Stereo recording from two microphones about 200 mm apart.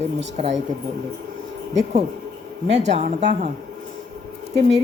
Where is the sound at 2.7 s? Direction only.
35° right (ahead or behind).